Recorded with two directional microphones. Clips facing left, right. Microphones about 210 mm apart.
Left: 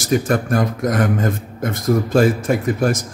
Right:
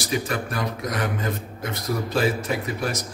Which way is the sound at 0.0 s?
45° left (ahead or behind).